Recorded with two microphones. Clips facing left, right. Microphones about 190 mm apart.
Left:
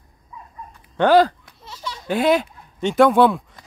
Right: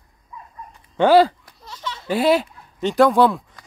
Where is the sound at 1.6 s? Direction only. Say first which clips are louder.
Right 1 dB; 10° left (ahead or behind).